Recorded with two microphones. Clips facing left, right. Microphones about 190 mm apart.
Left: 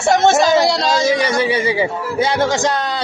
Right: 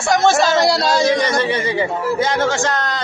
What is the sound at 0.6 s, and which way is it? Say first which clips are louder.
Speech: even; 5° right (ahead or behind).